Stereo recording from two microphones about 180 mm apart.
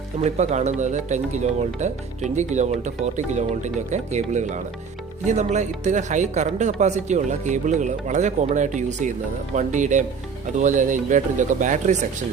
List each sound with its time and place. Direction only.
0.2 s speech: 40° right (ahead or behind)